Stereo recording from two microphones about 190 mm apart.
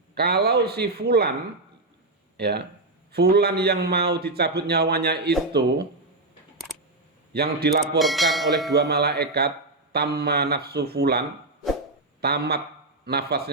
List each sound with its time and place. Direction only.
0.1 s a man's voice: 55° right (ahead or behind)
2.4 s a man's voice: 55° right (ahead or behind)
7.3 s a man's voice: 55° right (ahead or behind)
7.9 s speech: centre (ahead or behind)
8.7 s a man's voice: 55° right (ahead or behind)